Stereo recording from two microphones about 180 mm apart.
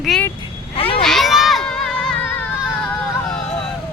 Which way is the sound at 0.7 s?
30° left (ahead or behind).